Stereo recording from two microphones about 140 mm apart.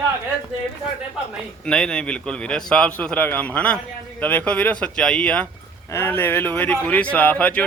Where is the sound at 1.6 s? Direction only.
5° left (ahead or behind).